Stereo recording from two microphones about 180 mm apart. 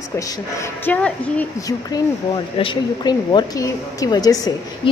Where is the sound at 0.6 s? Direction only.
10° left (ahead or behind).